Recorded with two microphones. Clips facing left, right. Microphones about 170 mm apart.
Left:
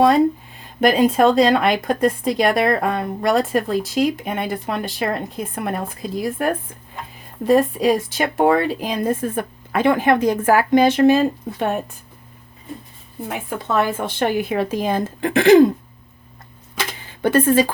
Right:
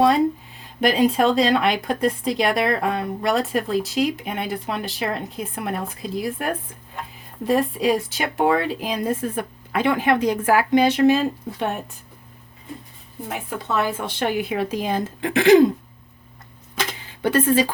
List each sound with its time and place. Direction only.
0.0 s speech: 50° left (ahead or behind)
13.2 s speech: 50° left (ahead or behind)
17.2 s speech: 50° left (ahead or behind)